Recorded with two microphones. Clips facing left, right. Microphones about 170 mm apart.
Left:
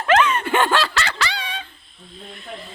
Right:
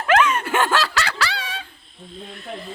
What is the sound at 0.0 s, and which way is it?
Dog, 5° right (ahead or behind).